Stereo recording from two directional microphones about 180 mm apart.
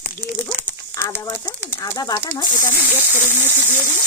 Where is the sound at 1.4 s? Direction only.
10° right (ahead or behind).